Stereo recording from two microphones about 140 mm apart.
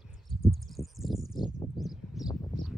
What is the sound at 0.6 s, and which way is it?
Bird, centre (ahead or behind).